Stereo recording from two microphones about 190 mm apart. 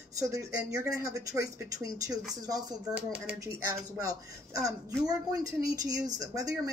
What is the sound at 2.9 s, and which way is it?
Speech, 10° right (ahead or behind).